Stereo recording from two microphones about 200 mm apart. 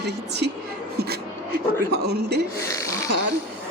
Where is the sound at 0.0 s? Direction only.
55° right (ahead or behind).